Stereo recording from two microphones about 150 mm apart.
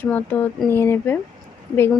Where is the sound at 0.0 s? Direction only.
10° left (ahead or behind).